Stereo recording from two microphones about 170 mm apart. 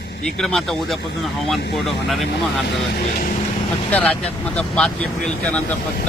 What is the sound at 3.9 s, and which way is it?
Speech, 10° left (ahead or behind).